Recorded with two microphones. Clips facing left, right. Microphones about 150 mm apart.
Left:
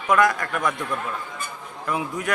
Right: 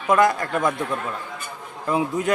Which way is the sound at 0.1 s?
25° right (ahead or behind).